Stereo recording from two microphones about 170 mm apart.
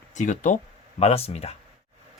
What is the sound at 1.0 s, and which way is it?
Speech, 35° left (ahead or behind).